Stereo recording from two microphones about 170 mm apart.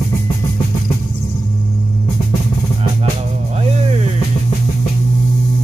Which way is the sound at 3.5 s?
40° right (ahead or behind).